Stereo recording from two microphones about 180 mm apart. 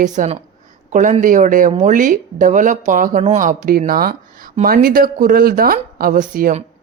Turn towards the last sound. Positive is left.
turn(degrees=-50)  # may be behind; listen again after turning